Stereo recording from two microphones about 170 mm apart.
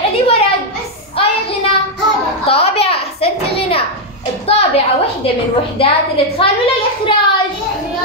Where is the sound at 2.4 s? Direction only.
35° left (ahead or behind).